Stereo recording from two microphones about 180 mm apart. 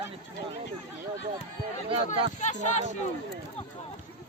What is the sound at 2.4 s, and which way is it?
Speech, 40° left (ahead or behind).